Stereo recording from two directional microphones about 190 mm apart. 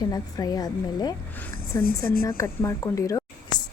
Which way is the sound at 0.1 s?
20° left (ahead or behind).